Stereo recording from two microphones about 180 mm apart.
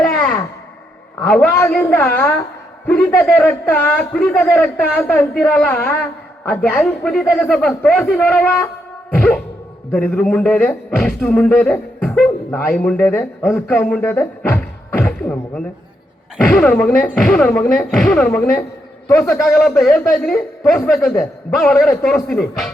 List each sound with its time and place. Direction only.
0.0 s a sound: 5° left (ahead or behind)
1.3 s a man's voice: 5° left (ahead or behind)
19.4 s a man's voice: centre (ahead or behind)